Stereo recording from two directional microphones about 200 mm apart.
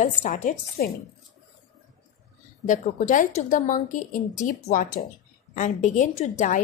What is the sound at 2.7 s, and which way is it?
A woman's voice, 40° left (ahead or behind).